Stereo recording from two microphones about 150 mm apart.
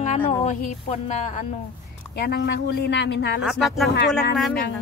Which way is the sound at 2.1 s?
90° left.